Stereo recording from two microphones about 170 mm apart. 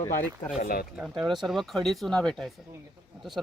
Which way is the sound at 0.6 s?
60° left (ahead or behind).